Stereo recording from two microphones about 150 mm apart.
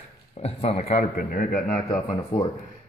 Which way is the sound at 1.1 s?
75° left (ahead or behind).